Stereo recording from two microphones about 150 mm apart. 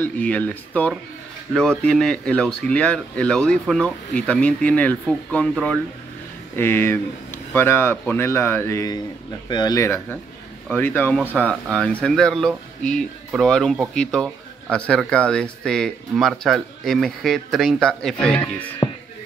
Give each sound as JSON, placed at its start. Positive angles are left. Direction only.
{"t": 0.0, "sound": "speech", "side_deg": 10}
{"t": 10.7, "sound": "speech", "side_deg": 10}